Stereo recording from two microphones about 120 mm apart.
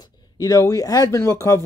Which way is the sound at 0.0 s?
30° left (ahead or behind).